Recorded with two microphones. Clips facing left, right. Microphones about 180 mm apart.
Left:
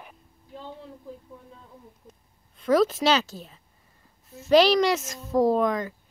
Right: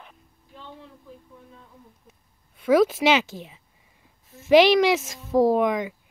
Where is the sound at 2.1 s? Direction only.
5° right (ahead or behind).